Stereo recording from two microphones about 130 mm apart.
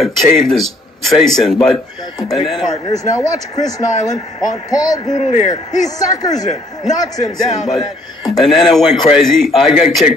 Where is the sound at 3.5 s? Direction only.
30° left (ahead or behind).